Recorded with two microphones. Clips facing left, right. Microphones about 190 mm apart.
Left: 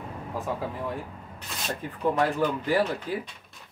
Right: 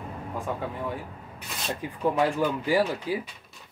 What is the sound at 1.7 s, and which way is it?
Speech, 10° right (ahead or behind).